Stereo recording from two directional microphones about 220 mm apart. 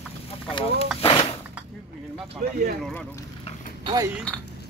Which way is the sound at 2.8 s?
5° left (ahead or behind).